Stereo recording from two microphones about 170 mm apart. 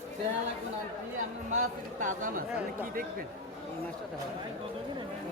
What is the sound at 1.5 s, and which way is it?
Speech, 45° right (ahead or behind).